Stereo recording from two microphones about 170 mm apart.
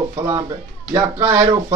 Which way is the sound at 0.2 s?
15° right (ahead or behind).